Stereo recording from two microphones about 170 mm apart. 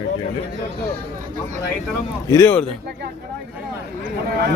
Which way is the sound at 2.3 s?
15° left (ahead or behind).